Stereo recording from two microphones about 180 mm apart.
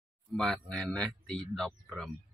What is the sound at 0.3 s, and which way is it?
Speech, centre (ahead or behind).